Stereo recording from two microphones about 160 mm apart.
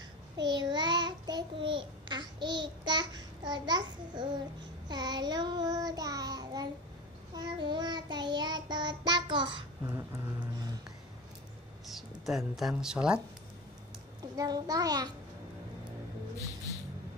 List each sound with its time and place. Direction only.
0.5 s child singing: 25° right (ahead or behind)
9.9 s child singing: 20° right (ahead or behind)
11.8 s speech: centre (ahead or behind)
14.3 s child singing: 25° right (ahead or behind)